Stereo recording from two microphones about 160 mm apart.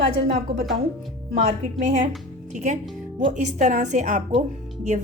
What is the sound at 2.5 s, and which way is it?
A woman's voice, 50° right (ahead or behind).